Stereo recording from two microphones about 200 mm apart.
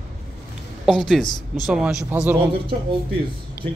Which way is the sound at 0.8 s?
Centre (ahead or behind).